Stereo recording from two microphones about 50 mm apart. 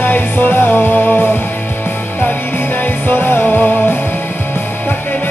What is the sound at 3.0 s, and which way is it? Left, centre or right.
Music, left.